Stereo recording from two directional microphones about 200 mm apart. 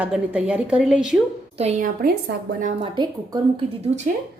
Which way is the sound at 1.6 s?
35° right (ahead or behind).